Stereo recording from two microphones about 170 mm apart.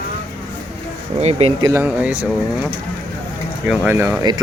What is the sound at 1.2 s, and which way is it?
Speech, 40° right (ahead or behind).